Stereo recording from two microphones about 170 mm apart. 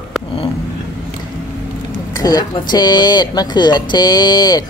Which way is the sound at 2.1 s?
20° left (ahead or behind).